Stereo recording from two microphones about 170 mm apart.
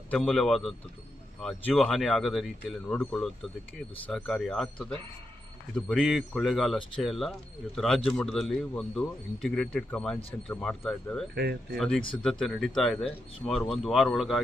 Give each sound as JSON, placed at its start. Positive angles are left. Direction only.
{"t": 0.1, "sound": "a man's voice", "side_deg": 5}
{"t": 11.3, "sound": "speech", "side_deg": -65}
{"t": 11.8, "sound": "a man's voice", "side_deg": 5}